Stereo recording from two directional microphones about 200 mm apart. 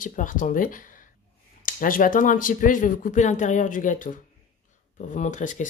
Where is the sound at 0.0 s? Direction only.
40° left (ahead or behind).